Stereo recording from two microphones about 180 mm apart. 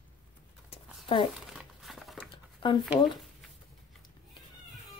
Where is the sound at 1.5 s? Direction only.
Centre (ahead or behind).